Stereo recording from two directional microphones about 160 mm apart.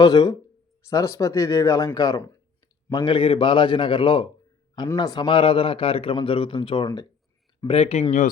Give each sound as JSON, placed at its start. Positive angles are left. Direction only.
{"t": 0.0, "sound": "a man's voice", "side_deg": 25}
{"t": 7.7, "sound": "a man's voice", "side_deg": 40}